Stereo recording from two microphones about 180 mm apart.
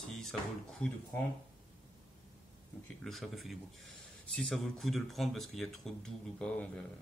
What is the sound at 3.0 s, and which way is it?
Speech, centre (ahead or behind).